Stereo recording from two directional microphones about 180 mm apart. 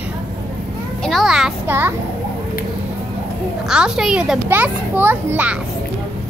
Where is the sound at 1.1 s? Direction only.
Centre (ahead or behind).